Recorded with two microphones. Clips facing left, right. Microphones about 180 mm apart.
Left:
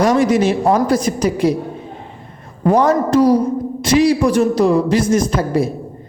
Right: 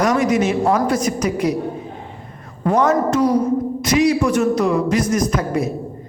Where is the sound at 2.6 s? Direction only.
35° left (ahead or behind).